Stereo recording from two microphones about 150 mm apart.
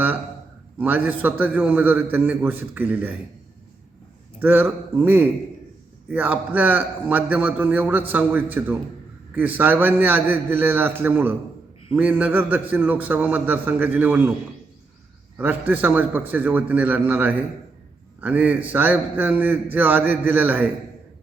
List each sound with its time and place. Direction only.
0.8 s a man's voice: 10° right (ahead or behind)
4.4 s a man's voice: 15° right (ahead or behind)
15.4 s a man's voice: 10° right (ahead or behind)